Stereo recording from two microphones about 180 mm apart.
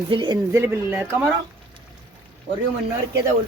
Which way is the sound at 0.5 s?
15° right (ahead or behind).